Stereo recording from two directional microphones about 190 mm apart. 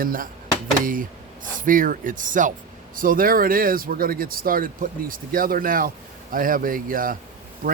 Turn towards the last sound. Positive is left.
turn(degrees=-45)  # may be behind; listen again after turning